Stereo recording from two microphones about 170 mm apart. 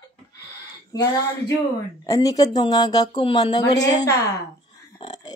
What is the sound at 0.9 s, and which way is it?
Speech, 20° left (ahead or behind).